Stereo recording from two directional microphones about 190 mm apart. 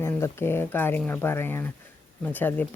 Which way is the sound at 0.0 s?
15° left (ahead or behind).